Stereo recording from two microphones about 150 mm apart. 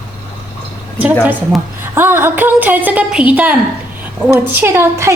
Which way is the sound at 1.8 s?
15° right (ahead or behind).